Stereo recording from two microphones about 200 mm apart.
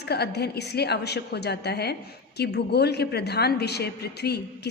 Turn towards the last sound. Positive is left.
turn(degrees=55)  # may be behind; listen again after turning